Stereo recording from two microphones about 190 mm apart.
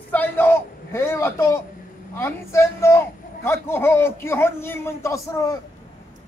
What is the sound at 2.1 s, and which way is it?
A man's voice, 15° left (ahead or behind).